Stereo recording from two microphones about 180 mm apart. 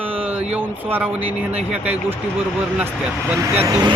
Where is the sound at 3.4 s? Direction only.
15° right (ahead or behind).